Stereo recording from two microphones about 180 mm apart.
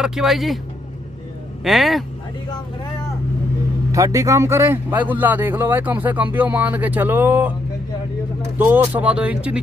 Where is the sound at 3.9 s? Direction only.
15° right (ahead or behind).